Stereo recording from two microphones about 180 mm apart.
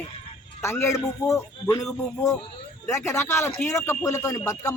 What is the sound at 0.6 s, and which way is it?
Speech, 15° left (ahead or behind).